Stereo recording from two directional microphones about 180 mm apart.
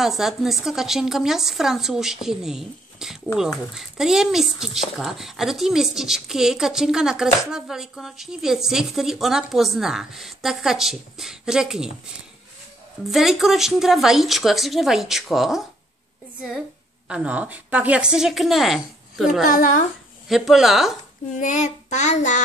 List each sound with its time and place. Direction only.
0.0 s speech: centre (ahead or behind)
13.1 s speech: centre (ahead or behind)
17.1 s speech: 5° right (ahead or behind)
19.4 s a child's voice: 50° left (ahead or behind)
20.2 s speech: centre (ahead or behind)
21.4 s child singing: 40° left (ahead or behind)